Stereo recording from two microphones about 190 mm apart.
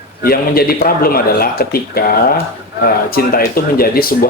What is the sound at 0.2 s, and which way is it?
Speech, 50° left (ahead or behind).